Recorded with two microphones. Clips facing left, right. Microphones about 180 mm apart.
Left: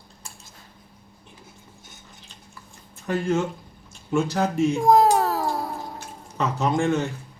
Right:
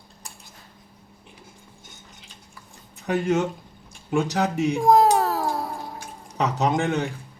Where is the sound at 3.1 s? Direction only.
20° right (ahead or behind).